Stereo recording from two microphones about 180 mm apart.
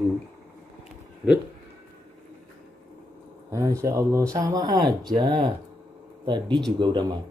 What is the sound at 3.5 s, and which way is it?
Speech, 15° right (ahead or behind).